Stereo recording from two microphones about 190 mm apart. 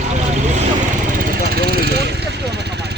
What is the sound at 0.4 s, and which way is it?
Vehicle, 35° right (ahead or behind).